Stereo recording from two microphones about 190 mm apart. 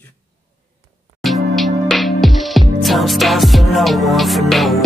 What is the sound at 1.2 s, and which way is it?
Music, centre (ahead or behind).